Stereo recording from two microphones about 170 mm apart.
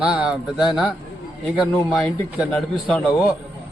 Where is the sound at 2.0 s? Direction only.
Centre (ahead or behind).